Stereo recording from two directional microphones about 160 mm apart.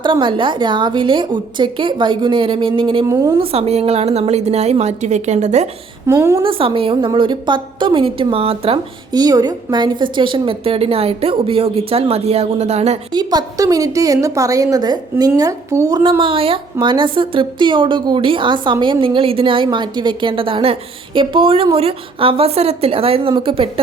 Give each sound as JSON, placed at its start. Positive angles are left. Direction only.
{"t": 0.0, "sound": "a woman's voice", "side_deg": -30}
{"t": 6.1, "sound": "a woman's voice", "side_deg": -15}
{"t": 6.4, "sound": "a woman's voice", "side_deg": -35}
{"t": 9.1, "sound": "a woman's voice", "side_deg": -25}
{"t": 13.1, "sound": "a woman's voice", "side_deg": -25}
{"t": 16.0, "sound": "a woman's voice", "side_deg": -30}